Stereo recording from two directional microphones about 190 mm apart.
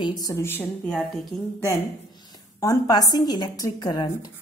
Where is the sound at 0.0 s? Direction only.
20° left (ahead or behind).